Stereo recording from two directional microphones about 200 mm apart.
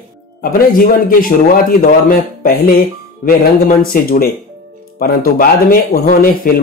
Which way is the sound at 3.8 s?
45° left (ahead or behind).